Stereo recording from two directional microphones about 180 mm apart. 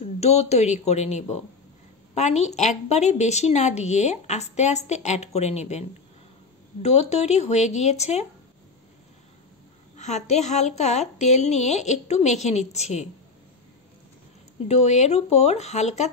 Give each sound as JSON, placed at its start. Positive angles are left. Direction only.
{"t": 0.2, "sound": "a woman's voice", "side_deg": 35}
{"t": 9.9, "sound": "a woman's voice", "side_deg": 40}
{"t": 14.7, "sound": "a woman's voice", "side_deg": 40}